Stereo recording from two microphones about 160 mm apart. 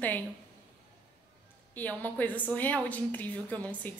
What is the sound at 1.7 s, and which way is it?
A woman's voice, 10° left (ahead or behind).